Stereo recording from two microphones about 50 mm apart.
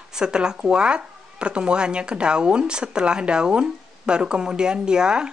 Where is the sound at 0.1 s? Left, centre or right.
Centre.